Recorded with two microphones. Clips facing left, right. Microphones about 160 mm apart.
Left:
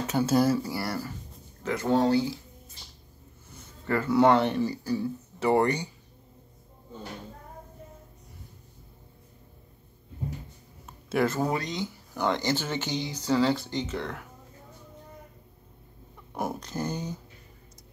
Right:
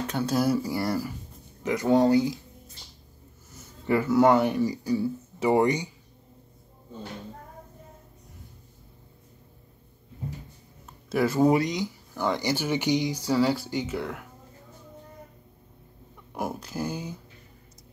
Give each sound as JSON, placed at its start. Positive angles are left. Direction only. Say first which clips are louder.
{"t": 0.0, "sound": "speech", "louder": "left 3 dB", "side_deg": 5}
{"t": 0.4, "sound": "speech", "louder": "right 1 dB", "side_deg": -5}
{"t": 0.7, "sound": "speech", "louder": "right 4 dB", "side_deg": -20}
{"t": 3.5, "sound": "a sound", "louder": "right 4 dB", "side_deg": -15}
{"t": 4.1, "sound": "speech", "louder": "even", "side_deg": -5}
{"t": 11.1, "sound": "speech", "louder": "right 5 dB", "side_deg": -5}
{"t": 11.8, "sound": "a sound", "louder": "even", "side_deg": 0}
{"t": 12.4, "sound": "speech", "louder": "right 2 dB", "side_deg": -10}
{"t": 16.3, "sound": "speech", "louder": "even", "side_deg": -5}